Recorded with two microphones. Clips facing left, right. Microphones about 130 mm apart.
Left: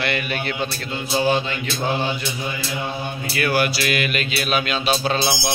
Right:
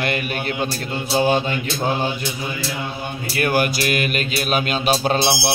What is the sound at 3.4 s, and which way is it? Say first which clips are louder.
Music: right 1 dB; 45° right (ahead or behind).